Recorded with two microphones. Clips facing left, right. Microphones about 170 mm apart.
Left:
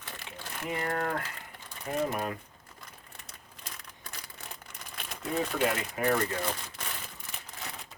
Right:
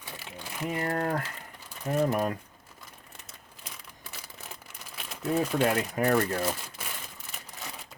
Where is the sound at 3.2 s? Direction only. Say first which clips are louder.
Left 1 dB; 5° right (ahead or behind).